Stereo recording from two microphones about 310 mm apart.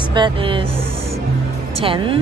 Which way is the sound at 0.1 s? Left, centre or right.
Centre.